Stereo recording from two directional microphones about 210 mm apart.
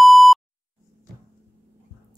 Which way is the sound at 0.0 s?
Centre (ahead or behind).